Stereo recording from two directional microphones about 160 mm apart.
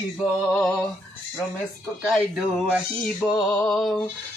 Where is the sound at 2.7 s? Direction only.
Centre (ahead or behind).